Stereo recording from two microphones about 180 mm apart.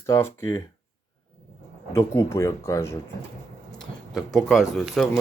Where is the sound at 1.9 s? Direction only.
15° left (ahead or behind).